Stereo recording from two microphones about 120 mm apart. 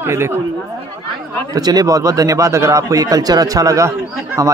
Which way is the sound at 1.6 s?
35° right (ahead or behind).